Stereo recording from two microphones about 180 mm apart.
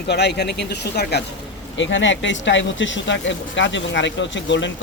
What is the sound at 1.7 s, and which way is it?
Speech, 90° left.